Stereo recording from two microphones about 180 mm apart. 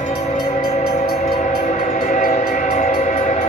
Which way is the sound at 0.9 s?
40° left (ahead or behind).